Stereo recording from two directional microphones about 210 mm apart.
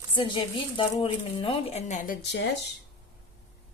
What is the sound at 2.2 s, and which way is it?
Speech, 55° left (ahead or behind).